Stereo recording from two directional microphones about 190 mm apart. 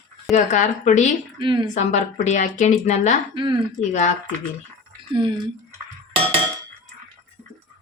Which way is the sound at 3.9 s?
40° left (ahead or behind).